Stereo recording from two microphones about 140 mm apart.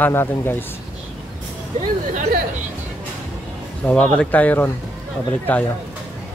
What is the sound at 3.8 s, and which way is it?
Speech, 10° left (ahead or behind).